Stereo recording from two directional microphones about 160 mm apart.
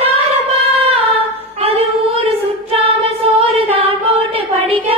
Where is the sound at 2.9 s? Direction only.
40° right (ahead or behind).